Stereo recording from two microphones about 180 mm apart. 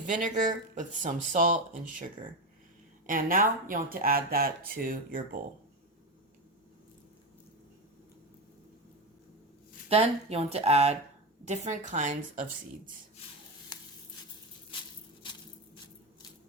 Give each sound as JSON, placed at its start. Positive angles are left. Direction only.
{"t": 0.1, "sound": "speech", "side_deg": -45}
{"t": 3.1, "sound": "speech", "side_deg": -50}
{"t": 9.9, "sound": "speech", "side_deg": -35}
{"t": 15.2, "sound": "a sound", "side_deg": 25}